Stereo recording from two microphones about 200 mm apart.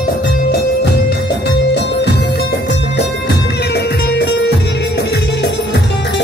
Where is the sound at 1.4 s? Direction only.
55° left (ahead or behind).